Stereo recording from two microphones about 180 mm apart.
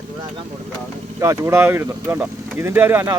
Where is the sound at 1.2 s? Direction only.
15° right (ahead or behind).